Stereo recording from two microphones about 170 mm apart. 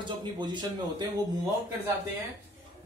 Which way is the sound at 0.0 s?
25° right (ahead or behind).